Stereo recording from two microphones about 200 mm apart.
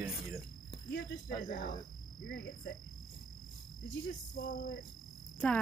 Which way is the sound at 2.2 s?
45° left (ahead or behind).